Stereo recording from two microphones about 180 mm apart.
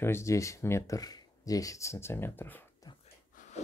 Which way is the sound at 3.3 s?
40° left (ahead or behind).